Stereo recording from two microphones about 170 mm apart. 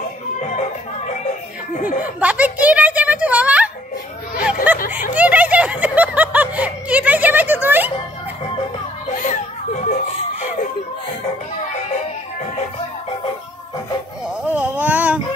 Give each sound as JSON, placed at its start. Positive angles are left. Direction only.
{"t": 0.4, "sound": "music", "side_deg": 40}
{"t": 2.1, "sound": "a woman's voice", "side_deg": -10}
{"t": 5.1, "sound": "snicker", "side_deg": -10}
{"t": 9.3, "sound": "chuckle", "side_deg": 45}
{"t": 14.4, "sound": "a sound", "side_deg": -10}